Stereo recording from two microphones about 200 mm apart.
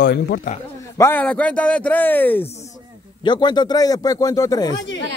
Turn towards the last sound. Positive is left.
turn(degrees=65)  # may be behind; listen again after turning